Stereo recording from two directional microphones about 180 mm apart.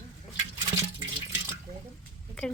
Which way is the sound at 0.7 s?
20° right (ahead or behind).